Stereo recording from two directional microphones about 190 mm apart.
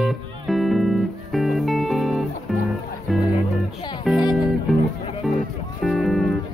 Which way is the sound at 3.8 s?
20° left (ahead or behind).